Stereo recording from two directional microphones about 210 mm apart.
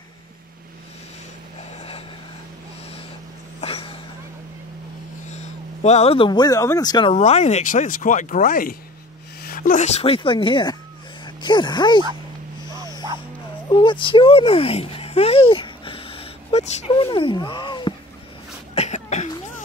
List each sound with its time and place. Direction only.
1.8 s vehicle: 25° left (ahead or behind)
3.6 s a sound: 25° left (ahead or behind)
5.3 s speech: 30° left (ahead or behind)
13.7 s a child's voice: 20° left (ahead or behind)
18.8 s cough: 35° left (ahead or behind)